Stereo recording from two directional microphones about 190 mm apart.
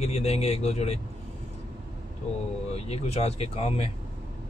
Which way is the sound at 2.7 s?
35° left (ahead or behind).